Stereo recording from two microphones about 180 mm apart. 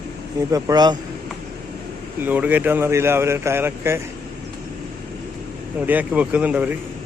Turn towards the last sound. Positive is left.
turn(degrees=-10)  # may be behind; listen again after turning